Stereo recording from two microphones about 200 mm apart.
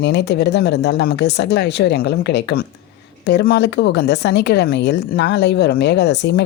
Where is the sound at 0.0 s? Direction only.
55° left (ahead or behind).